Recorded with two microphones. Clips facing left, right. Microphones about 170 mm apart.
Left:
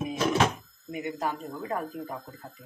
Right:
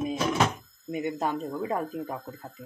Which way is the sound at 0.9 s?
25° right (ahead or behind).